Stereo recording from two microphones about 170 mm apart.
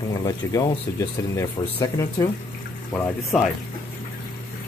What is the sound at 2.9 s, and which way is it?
Speech, 5° left (ahead or behind).